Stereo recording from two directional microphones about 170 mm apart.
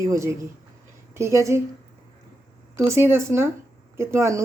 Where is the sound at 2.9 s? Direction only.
15° right (ahead or behind).